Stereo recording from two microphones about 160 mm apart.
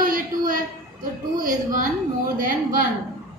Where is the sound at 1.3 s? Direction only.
55° right (ahead or behind).